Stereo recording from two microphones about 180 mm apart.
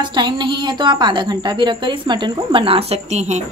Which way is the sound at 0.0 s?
25° right (ahead or behind).